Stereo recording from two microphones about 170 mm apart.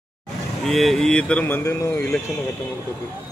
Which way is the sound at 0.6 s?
Centre (ahead or behind).